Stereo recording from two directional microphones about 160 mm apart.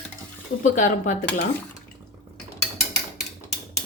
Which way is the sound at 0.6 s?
55° left (ahead or behind).